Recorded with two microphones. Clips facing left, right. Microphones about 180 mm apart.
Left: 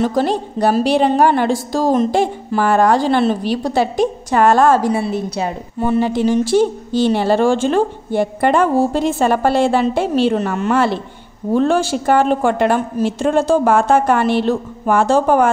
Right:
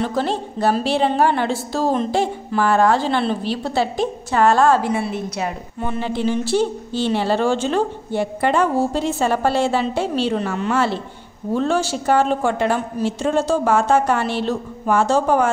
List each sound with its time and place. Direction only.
0.0 s a woman's voice: 40° left (ahead or behind)